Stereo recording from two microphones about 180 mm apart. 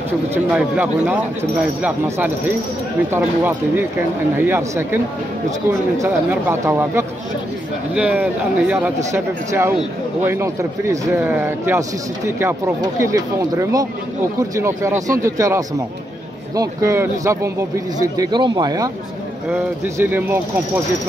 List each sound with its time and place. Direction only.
0.3 s a man's voice: 5° right (ahead or behind)
19.5 s speech: 10° right (ahead or behind)